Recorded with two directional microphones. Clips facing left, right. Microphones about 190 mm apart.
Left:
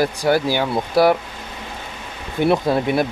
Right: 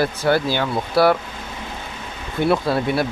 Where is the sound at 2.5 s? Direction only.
15° left (ahead or behind).